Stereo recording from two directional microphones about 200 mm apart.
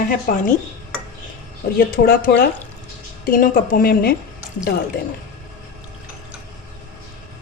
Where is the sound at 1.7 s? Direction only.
45° left (ahead or behind).